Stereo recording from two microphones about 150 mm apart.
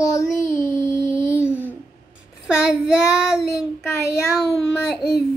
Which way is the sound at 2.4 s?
Centre (ahead or behind).